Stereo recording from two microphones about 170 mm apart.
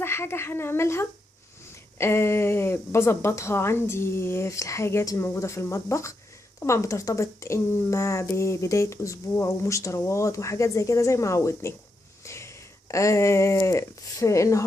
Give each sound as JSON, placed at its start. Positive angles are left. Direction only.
{"t": 0.0, "sound": "speech", "side_deg": 15}